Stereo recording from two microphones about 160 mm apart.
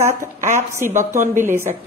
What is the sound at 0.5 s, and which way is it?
A man's voice, 15° right (ahead or behind).